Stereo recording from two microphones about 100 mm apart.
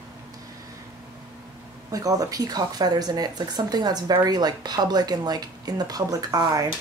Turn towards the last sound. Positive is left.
turn(degrees=-35)  # may be behind; listen again after turning